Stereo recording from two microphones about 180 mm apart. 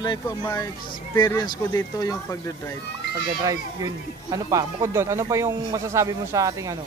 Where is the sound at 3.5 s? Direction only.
20° right (ahead or behind).